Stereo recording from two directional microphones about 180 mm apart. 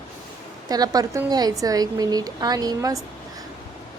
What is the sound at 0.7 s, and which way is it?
A woman's voice, 20° right (ahead or behind).